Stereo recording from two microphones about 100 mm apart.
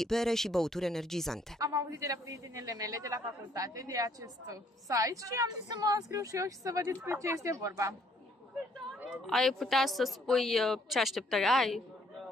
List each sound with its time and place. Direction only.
0.0 s a woman's voice: 5° left (ahead or behind)
1.6 s a man's voice: 35° right (ahead or behind)
9.2 s a woman's voice: 5° left (ahead or behind)